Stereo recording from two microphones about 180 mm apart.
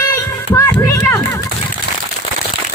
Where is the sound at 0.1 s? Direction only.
15° left (ahead or behind).